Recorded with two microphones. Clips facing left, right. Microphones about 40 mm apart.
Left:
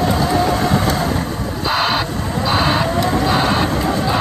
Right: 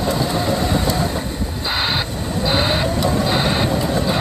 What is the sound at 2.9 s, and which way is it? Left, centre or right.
Vehicle, left.